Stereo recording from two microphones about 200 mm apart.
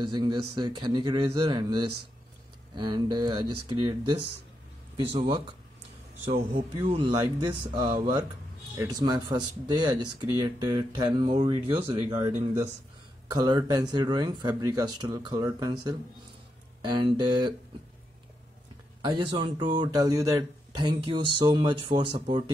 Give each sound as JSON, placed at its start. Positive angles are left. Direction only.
{"t": 0.0, "sound": "speech", "side_deg": -20}
{"t": 6.5, "sound": "speech", "side_deg": -25}
{"t": 13.3, "sound": "speech", "side_deg": -20}
{"t": 18.9, "sound": "speech", "side_deg": -25}